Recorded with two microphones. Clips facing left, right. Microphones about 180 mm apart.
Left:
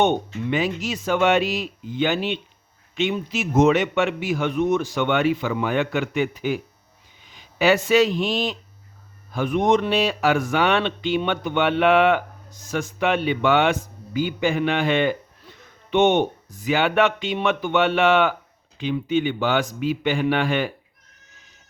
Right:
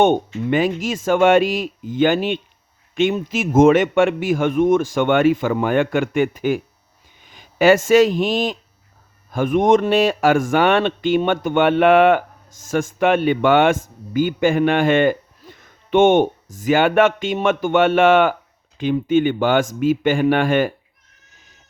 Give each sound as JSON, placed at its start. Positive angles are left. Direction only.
{"t": 0.4, "sound": "a man's voice", "side_deg": -50}